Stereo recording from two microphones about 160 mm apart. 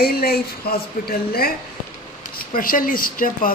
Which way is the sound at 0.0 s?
70° left (ahead or behind).